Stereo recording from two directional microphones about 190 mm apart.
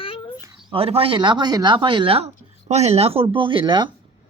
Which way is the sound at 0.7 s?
30° right (ahead or behind).